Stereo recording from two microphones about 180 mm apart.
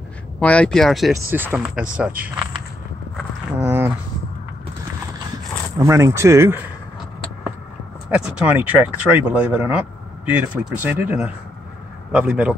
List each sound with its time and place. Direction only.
0.4 s speech: 5° left (ahead or behind)
1.3 s speech: 10° right (ahead or behind)
3.6 s a sound: 10° right (ahead or behind)
5.8 s speech: 15° right (ahead or behind)
8.1 s speech: 5° right (ahead or behind)